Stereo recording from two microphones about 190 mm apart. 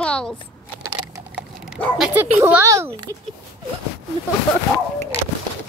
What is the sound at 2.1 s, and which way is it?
A child's voice, 10° right (ahead or behind).